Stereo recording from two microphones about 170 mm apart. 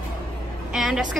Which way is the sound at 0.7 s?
Centre (ahead or behind).